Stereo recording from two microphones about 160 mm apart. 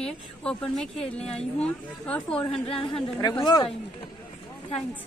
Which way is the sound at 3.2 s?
25° left (ahead or behind).